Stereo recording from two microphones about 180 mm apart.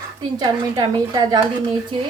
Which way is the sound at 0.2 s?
25° right (ahead or behind).